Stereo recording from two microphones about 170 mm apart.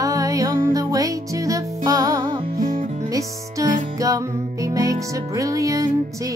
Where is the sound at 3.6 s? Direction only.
20° right (ahead or behind).